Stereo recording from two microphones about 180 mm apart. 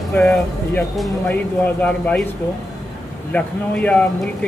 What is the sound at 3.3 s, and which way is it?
Speech, 5° left (ahead or behind).